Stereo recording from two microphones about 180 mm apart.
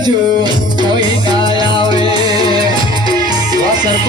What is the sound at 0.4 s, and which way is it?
Music, 25° right (ahead or behind).